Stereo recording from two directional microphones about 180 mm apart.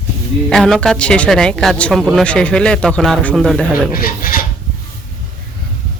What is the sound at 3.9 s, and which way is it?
Speech, 55° left (ahead or behind).